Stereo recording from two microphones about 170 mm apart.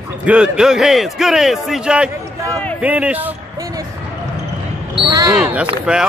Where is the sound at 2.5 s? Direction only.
10° left (ahead or behind).